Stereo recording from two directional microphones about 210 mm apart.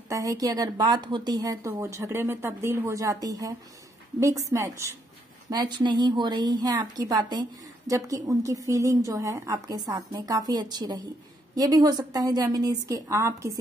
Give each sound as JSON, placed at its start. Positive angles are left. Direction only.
{"t": 0.1, "sound": "a woman's voice", "side_deg": -15}